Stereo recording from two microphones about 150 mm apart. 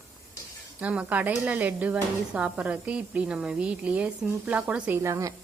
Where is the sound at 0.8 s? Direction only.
10° right (ahead or behind).